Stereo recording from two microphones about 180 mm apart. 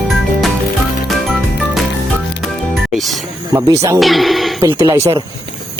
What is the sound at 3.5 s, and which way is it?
Speech, 20° right (ahead or behind).